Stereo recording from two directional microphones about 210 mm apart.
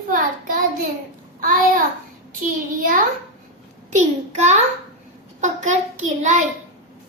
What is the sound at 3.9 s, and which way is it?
Speech, 35° right (ahead or behind).